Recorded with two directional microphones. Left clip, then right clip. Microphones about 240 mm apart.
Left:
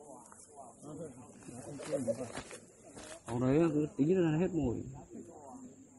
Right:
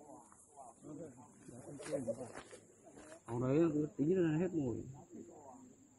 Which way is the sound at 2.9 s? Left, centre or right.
Left.